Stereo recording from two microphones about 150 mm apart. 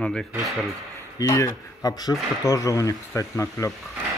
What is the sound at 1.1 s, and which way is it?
Speech, 20° left (ahead or behind).